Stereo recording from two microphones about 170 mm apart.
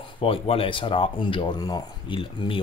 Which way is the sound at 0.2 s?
35° left (ahead or behind).